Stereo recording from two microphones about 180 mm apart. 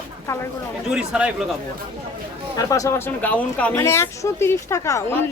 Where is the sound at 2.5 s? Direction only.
20° left (ahead or behind).